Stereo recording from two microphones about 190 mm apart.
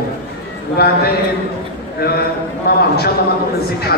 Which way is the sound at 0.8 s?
55° left (ahead or behind).